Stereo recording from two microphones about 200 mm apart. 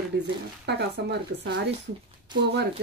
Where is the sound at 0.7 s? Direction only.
55° right (ahead or behind).